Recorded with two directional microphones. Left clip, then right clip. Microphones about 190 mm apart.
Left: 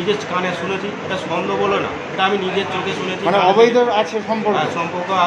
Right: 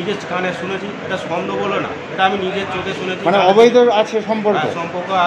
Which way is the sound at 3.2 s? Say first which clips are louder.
Right 2 dB; 45° right (ahead or behind).